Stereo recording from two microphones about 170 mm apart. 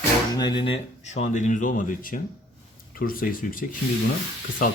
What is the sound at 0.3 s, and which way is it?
Speech, 25° left (ahead or behind).